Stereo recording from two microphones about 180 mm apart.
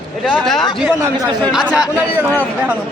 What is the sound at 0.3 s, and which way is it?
A man's voice, centre (ahead or behind).